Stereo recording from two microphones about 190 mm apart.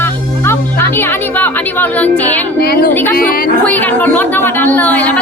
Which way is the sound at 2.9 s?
10° left (ahead or behind).